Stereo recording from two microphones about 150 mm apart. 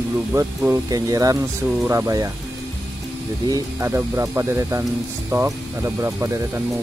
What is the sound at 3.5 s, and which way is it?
Speech, 20° right (ahead or behind).